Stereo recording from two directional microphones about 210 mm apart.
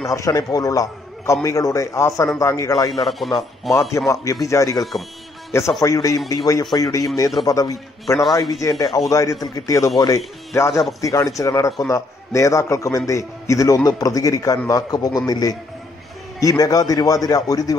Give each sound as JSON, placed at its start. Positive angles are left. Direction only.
{"t": 0.1, "sound": "a man's voice", "side_deg": 15}
{"t": 2.9, "sound": "speech", "side_deg": 0}
{"t": 3.9, "sound": "a man's voice", "side_deg": 15}